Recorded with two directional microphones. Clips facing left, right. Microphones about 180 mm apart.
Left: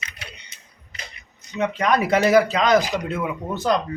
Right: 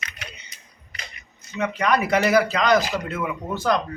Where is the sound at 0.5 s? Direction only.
25° left (ahead or behind).